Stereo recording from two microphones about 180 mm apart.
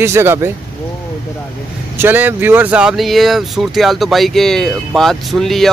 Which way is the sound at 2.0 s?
10° right (ahead or behind).